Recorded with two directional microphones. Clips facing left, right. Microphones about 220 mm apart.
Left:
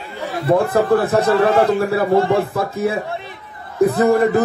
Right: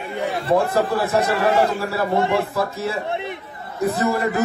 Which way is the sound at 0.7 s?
55° left (ahead or behind).